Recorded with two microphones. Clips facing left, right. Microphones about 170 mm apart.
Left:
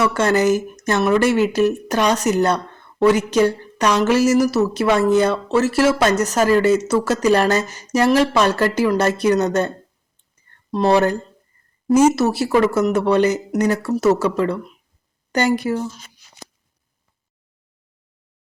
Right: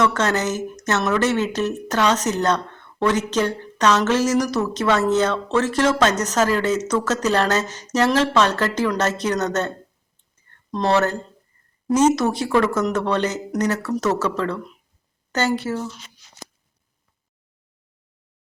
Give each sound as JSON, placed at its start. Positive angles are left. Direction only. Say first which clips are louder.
{"t": 0.0, "sound": "a woman's voice", "louder": "left 4 dB", "side_deg": 10}
{"t": 15.9, "sound": "speech", "louder": "left 2 dB", "side_deg": 45}